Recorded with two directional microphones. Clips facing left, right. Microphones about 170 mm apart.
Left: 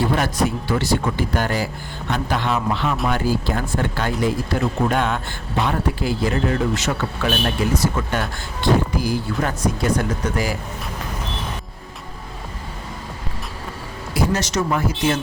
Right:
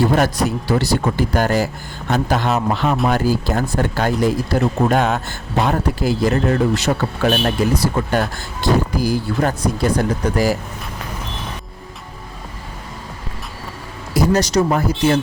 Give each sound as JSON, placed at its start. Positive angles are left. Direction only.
{"t": 0.1, "sound": "speech", "side_deg": -40}
{"t": 14.1, "sound": "speech", "side_deg": -40}